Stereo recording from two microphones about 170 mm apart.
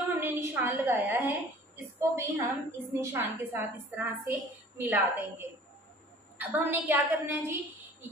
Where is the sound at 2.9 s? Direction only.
15° right (ahead or behind).